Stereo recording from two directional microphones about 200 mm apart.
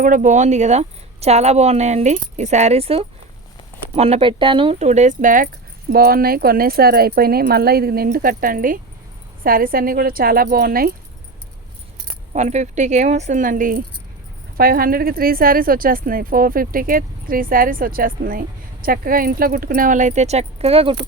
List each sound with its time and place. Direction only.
0.0 s a woman's voice: 40° right (ahead or behind)
12.3 s a woman's voice: 35° right (ahead or behind)